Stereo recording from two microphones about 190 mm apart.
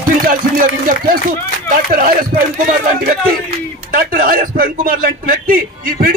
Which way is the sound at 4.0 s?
50° right (ahead or behind).